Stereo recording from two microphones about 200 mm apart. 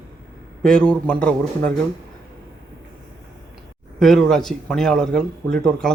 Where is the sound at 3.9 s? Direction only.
Centre (ahead or behind).